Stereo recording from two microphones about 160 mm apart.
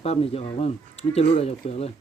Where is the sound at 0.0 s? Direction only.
40° left (ahead or behind).